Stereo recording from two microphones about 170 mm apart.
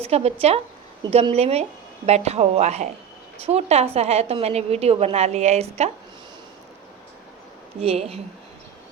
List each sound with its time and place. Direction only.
0.0 s a woman's voice: 35° right (ahead or behind)
7.8 s a woman's voice: 35° right (ahead or behind)